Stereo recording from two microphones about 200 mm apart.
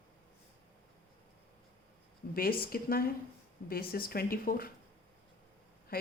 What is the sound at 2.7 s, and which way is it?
Speech, 50° left (ahead or behind).